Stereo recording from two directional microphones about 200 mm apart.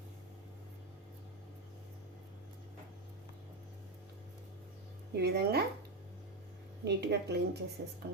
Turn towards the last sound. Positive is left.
turn(degrees=-55)  # may be behind; listen again after turning